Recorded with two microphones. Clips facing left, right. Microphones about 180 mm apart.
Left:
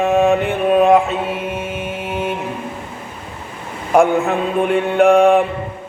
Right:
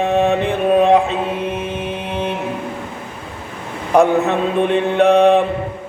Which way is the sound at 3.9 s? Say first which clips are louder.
Even; 35° right (ahead or behind).